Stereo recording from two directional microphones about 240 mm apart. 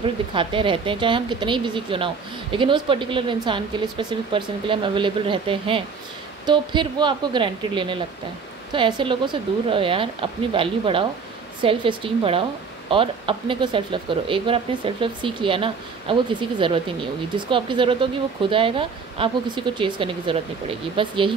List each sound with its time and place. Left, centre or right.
0.0 s speech: right